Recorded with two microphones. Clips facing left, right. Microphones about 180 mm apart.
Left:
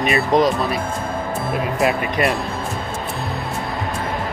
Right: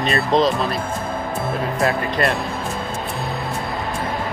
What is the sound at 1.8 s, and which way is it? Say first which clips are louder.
Speech: left 1 dB; 15° left (ahead or behind).